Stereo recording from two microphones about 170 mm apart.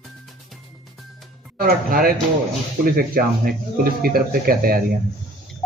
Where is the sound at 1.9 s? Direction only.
60° right (ahead or behind).